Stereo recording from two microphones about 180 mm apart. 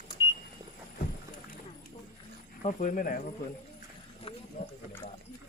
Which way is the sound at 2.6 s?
45° left (ahead or behind).